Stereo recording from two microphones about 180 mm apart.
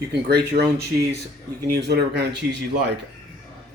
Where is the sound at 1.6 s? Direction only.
65° right (ahead or behind).